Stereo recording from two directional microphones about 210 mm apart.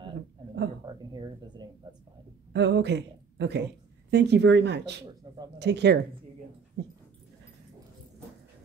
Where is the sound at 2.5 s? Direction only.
55° right (ahead or behind).